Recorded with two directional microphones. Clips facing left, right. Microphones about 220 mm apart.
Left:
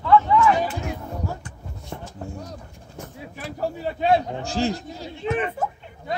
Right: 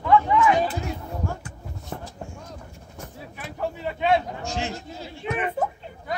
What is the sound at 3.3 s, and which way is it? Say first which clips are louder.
A man's voice: left 2 dB; 40° left (ahead or behind).